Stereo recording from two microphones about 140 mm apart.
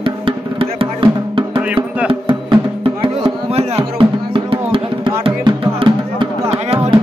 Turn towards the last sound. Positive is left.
turn(degrees=-45)  # may be behind; listen again after turning